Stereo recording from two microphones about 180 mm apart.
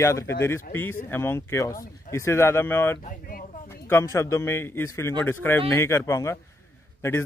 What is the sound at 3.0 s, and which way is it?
Speech, 50° left (ahead or behind).